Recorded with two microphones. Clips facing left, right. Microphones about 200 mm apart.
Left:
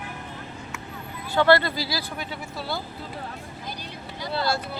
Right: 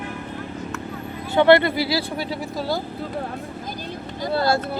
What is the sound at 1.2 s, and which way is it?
Speech, 20° right (ahead or behind).